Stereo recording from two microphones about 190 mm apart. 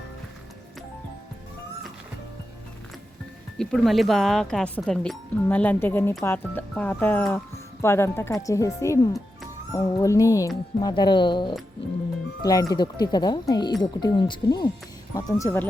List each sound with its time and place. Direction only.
3.6 s speech: centre (ahead or behind)